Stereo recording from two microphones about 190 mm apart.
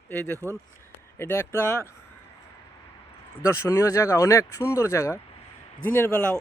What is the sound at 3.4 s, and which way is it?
Speech, 15° left (ahead or behind).